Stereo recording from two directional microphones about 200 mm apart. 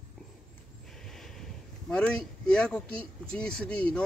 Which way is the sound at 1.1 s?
Centre (ahead or behind).